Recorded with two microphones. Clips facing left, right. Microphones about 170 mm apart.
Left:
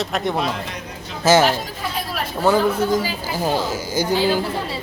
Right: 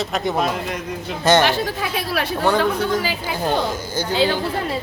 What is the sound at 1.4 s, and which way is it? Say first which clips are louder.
Chatter: right 1 dB; 75° right (ahead or behind).